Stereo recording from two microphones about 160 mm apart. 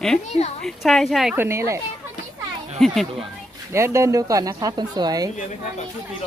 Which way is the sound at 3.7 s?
15° right (ahead or behind).